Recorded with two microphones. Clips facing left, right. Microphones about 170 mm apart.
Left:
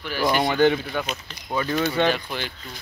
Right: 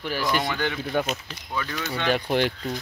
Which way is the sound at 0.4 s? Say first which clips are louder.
Left 8 dB; 25° left (ahead or behind).